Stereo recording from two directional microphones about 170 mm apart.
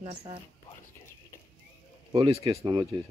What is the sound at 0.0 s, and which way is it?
Speech, 35° right (ahead or behind).